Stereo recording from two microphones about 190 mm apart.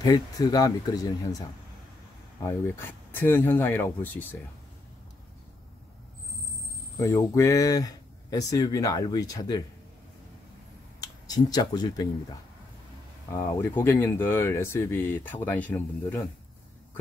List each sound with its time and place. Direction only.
0.0 s speech: 20° left (ahead or behind)
7.0 s speech: 15° left (ahead or behind)
11.0 s speech: 20° left (ahead or behind)